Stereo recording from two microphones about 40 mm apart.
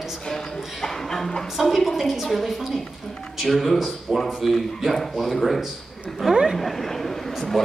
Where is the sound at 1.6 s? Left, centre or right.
Centre.